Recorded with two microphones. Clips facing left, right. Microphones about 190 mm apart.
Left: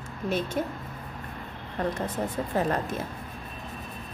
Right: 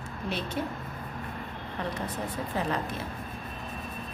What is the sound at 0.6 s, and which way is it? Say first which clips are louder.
Speech: left 3 dB; 45° left (ahead or behind).